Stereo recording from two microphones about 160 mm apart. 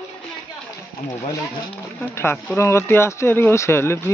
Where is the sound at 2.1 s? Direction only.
15° left (ahead or behind).